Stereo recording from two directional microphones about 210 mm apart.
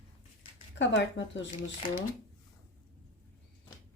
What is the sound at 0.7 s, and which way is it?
Speech, 60° left (ahead or behind).